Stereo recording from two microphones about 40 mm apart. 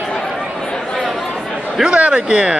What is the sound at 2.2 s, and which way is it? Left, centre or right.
Speech, right.